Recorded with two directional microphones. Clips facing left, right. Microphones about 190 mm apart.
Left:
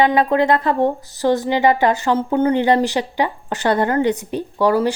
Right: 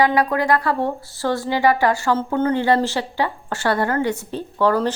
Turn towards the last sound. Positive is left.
turn(degrees=10)  # may be behind; listen again after turning